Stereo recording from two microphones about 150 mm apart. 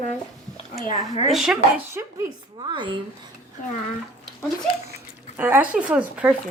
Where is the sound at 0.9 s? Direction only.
45° left (ahead or behind).